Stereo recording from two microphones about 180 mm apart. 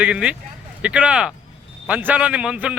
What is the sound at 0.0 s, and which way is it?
Speech, 5° right (ahead or behind).